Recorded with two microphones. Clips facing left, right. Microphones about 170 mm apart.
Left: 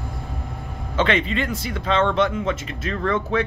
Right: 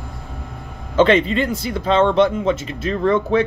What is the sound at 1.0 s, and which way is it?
Speech, 35° right (ahead or behind).